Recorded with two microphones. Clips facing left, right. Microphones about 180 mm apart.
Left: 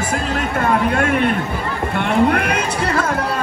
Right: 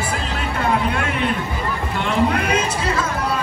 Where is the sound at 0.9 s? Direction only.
50° left (ahead or behind).